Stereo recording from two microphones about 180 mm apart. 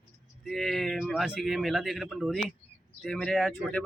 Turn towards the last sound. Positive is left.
turn(degrees=0)  # may be behind; listen again after turning